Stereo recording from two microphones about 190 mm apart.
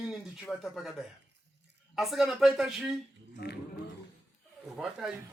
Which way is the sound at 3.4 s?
60° left (ahead or behind).